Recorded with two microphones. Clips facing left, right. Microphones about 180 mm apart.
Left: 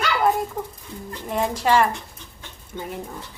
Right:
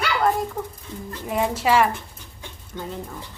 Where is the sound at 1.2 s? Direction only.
5° right (ahead or behind).